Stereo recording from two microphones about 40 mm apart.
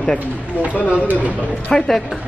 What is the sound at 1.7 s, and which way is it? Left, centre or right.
Speech, centre.